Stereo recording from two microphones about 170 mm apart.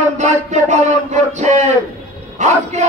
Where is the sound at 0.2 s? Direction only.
45° right (ahead or behind).